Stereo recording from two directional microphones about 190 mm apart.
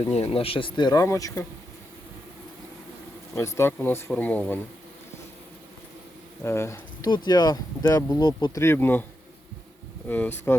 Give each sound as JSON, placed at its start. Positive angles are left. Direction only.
{"t": 0.0, "sound": "speech", "side_deg": 30}
{"t": 3.3, "sound": "speech", "side_deg": 15}
{"t": 6.4, "sound": "speech", "side_deg": 15}
{"t": 10.1, "sound": "speech", "side_deg": 10}